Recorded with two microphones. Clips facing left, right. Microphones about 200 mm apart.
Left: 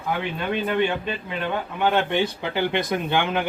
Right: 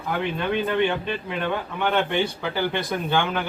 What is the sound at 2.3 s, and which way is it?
Speech, 20° left (ahead or behind).